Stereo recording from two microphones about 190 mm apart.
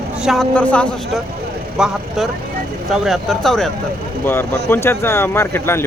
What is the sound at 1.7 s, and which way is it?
Vehicle, centre (ahead or behind).